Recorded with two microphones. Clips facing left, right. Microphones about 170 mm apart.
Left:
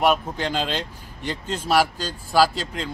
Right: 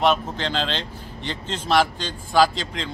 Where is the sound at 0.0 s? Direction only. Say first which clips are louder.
Even; 10° left (ahead or behind).